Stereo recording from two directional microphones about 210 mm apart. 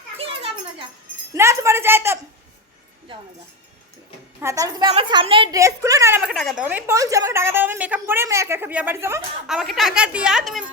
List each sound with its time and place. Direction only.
0.2 s children playing: 25° right (ahead or behind)
1.3 s a woman's voice: 15° right (ahead or behind)
4.4 s a woman's voice: 15° right (ahead or behind)
9.5 s speech: centre (ahead or behind)